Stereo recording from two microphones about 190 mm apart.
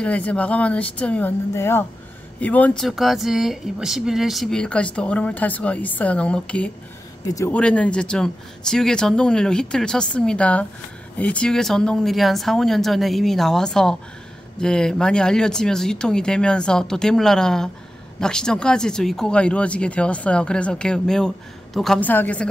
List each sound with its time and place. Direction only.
0.0 s speech: 5° left (ahead or behind)
7.2 s speech: 15° left (ahead or behind)
7.5 s speech: 5° left (ahead or behind)